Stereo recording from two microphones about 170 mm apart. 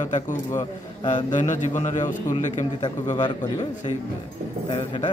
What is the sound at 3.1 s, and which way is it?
Speech, 25° left (ahead or behind).